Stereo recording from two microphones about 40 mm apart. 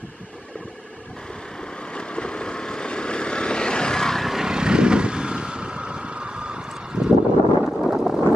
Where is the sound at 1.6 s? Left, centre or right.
Left.